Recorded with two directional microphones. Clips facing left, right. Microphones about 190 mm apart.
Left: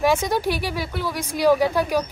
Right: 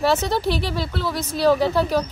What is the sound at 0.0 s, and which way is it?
A woman's voice, 10° left (ahead or behind).